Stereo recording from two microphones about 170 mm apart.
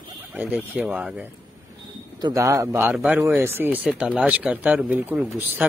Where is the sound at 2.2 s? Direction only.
20° right (ahead or behind).